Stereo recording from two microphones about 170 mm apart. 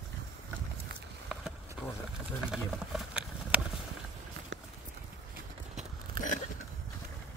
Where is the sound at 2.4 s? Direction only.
5° right (ahead or behind).